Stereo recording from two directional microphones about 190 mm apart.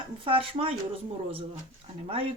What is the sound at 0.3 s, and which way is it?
Speech, 30° right (ahead or behind).